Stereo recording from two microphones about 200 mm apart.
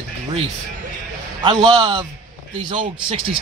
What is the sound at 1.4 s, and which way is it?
Speech, 20° right (ahead or behind).